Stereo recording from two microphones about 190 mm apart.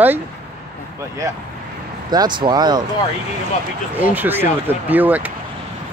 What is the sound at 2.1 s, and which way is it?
Speech, 25° right (ahead or behind).